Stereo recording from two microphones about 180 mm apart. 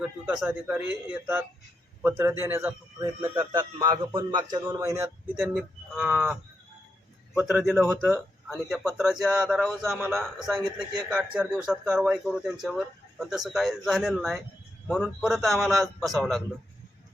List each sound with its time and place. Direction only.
0.3 s speech: 5° right (ahead or behind)
5.5 s speech: 5° right (ahead or behind)
7.3 s a man's voice: 5° right (ahead or behind)